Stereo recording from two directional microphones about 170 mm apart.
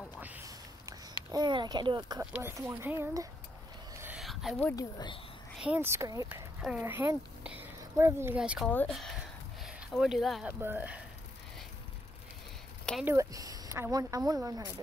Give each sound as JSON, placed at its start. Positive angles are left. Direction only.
{"t": 1.3, "sound": "speech", "side_deg": -25}
{"t": 2.3, "sound": "speech", "side_deg": -15}
{"t": 4.2, "sound": "a sound", "side_deg": 0}
{"t": 4.7, "sound": "speech", "side_deg": 25}
{"t": 5.6, "sound": "speech", "side_deg": -10}
{"t": 8.4, "sound": "speech", "side_deg": -5}
{"t": 8.6, "sound": "speech", "side_deg": 5}
{"t": 9.6, "sound": "a sound", "side_deg": -5}
{"t": 10.6, "sound": "speech", "side_deg": -10}
{"t": 13.0, "sound": "speech", "side_deg": -20}